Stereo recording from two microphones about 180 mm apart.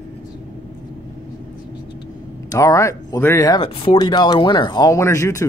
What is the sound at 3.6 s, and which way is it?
Speech, 30° left (ahead or behind).